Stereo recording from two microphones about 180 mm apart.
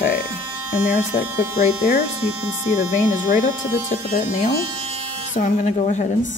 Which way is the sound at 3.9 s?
40° left (ahead or behind).